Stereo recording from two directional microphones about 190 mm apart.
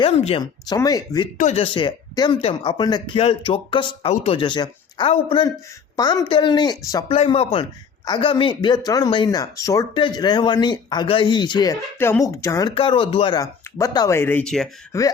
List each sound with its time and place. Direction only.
0.0 s a man's voice: 30° left (ahead or behind)
1.4 s a man's voice: 35° left (ahead or behind); by 14.7 s 5° left (ahead or behind)
14.9 s speech: 15° left (ahead or behind)